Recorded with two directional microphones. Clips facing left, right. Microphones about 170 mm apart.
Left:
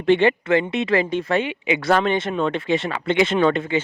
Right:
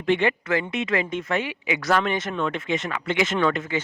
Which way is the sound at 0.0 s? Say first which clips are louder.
Left 5 dB; 30° left (ahead or behind).